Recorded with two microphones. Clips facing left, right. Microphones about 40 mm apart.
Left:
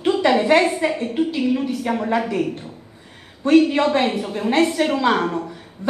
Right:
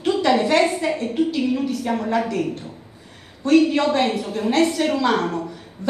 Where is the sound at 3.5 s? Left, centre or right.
Left.